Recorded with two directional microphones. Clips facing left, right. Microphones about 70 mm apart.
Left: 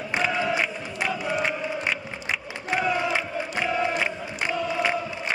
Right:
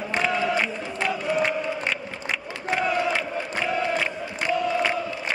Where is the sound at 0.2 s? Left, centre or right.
Centre.